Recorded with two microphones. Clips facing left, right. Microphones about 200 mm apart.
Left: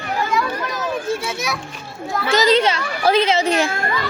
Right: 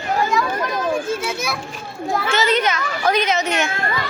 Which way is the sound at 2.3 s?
35° left (ahead or behind).